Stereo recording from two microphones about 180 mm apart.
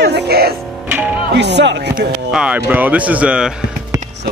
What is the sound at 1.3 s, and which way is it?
Speech, 70° right (ahead or behind).